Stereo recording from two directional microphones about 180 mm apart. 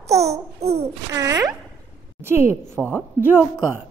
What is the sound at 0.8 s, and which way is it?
Speech, 15° right (ahead or behind).